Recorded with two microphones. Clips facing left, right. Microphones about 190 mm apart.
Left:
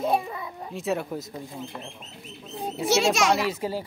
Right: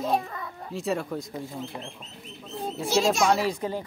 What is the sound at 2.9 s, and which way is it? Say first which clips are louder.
Speech: even; 80° left.